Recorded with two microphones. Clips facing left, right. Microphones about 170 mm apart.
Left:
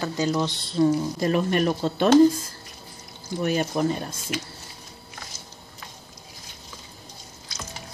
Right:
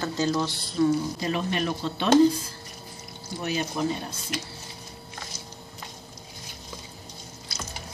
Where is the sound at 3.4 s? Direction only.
50° left (ahead or behind).